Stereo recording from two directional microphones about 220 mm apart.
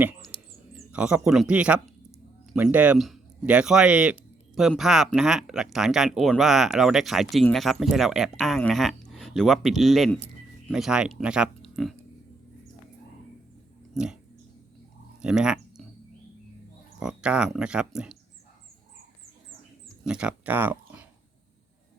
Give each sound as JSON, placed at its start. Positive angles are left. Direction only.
{"t": 0.9, "sound": "speech", "side_deg": -5}
{"t": 13.9, "sound": "speech", "side_deg": -5}
{"t": 15.2, "sound": "a sound", "side_deg": -5}
{"t": 17.0, "sound": "speech", "side_deg": -5}
{"t": 20.1, "sound": "speech", "side_deg": -5}